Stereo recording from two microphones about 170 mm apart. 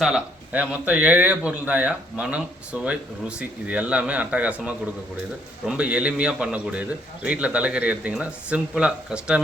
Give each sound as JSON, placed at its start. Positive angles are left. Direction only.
{"t": 0.0, "sound": "a man's voice", "side_deg": -5}